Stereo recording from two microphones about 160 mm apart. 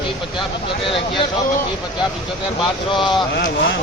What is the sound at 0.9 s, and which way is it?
Speech, 35° left (ahead or behind).